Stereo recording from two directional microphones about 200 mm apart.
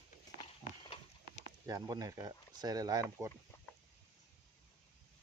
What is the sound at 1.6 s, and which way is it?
Speech, 20° right (ahead or behind).